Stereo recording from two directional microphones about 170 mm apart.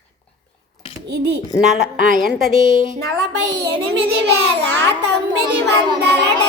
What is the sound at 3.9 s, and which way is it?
A child's voice, 90° right.